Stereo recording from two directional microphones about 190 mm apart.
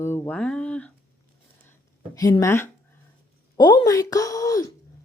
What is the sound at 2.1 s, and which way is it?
A woman's voice, 15° left (ahead or behind).